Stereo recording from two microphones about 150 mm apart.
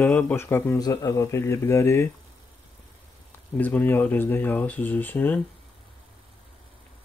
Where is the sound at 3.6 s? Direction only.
10° left (ahead or behind).